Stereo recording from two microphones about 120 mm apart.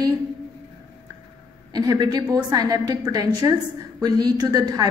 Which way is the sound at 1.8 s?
35° right (ahead or behind).